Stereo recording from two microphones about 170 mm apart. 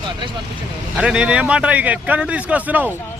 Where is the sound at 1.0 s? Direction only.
5° right (ahead or behind).